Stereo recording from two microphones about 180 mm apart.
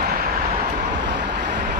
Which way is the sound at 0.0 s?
55° right (ahead or behind).